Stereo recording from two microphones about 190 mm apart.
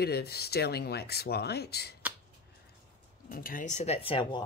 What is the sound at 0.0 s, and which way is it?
Speech, 55° left (ahead or behind).